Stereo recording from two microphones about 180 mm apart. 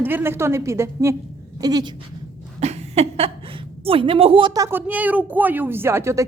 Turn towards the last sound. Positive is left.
turn(degrees=-15)  # may be behind; listen again after turning